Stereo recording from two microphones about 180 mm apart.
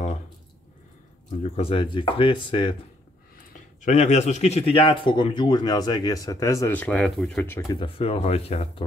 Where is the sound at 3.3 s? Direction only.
40° left (ahead or behind); by 7.5 s 5° left (ahead or behind).